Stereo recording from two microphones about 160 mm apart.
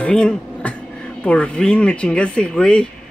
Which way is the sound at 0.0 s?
5° left (ahead or behind).